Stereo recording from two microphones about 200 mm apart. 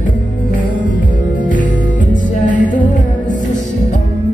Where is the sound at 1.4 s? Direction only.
40° left (ahead or behind).